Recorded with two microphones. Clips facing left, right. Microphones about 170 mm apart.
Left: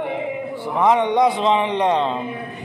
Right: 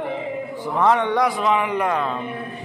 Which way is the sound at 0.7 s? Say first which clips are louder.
Left 2 dB; 15° left (ahead or behind).